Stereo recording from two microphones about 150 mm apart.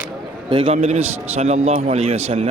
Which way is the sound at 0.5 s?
40° right (ahead or behind).